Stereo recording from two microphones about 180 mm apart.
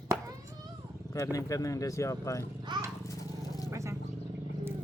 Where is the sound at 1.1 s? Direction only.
20° left (ahead or behind).